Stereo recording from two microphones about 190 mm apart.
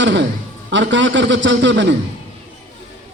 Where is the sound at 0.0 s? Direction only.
70° right (ahead or behind).